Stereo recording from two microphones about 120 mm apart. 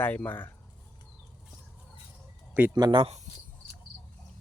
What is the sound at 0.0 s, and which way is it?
Speech, 15° left (ahead or behind).